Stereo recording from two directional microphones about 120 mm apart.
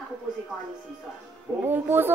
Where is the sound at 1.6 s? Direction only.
15° right (ahead or behind).